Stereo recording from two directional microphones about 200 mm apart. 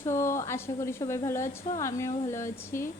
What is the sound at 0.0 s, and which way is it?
A woman's voice, 15° left (ahead or behind).